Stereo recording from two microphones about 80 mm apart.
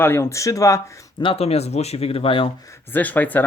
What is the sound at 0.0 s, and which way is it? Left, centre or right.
Speech, left.